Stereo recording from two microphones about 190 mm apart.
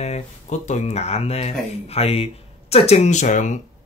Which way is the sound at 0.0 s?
35° left (ahead or behind).